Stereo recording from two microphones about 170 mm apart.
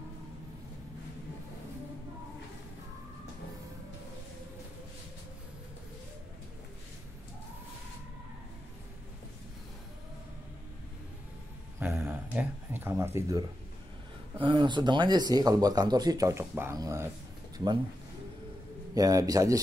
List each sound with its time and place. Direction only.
11.8 s a sound: 10° right (ahead or behind)
14.4 s speech: 30° right (ahead or behind)
18.9 s speech: 20° right (ahead or behind)